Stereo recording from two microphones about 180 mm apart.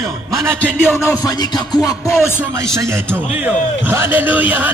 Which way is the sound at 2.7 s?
15° right (ahead or behind).